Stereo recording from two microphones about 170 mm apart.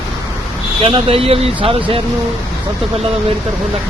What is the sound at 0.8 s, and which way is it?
Speech, 30° right (ahead or behind).